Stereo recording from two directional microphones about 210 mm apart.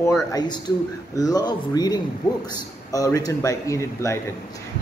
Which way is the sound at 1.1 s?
20° left (ahead or behind).